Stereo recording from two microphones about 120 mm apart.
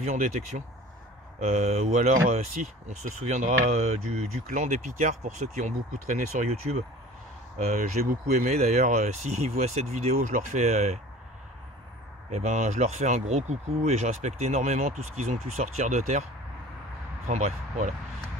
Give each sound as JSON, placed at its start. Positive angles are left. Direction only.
{"t": 0.0, "sound": "speech", "side_deg": -80}
{"t": 12.3, "sound": "speech", "side_deg": -70}
{"t": 17.3, "sound": "speech", "side_deg": -85}